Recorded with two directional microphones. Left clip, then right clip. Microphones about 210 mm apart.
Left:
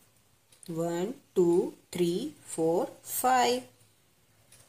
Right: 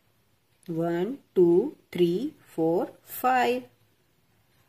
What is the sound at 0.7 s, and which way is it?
Speech, 30° right (ahead or behind).